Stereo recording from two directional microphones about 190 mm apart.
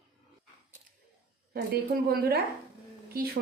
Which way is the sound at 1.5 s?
55° right (ahead or behind).